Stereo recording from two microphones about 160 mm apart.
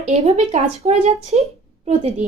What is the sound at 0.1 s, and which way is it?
A woman's voice, 40° right (ahead or behind).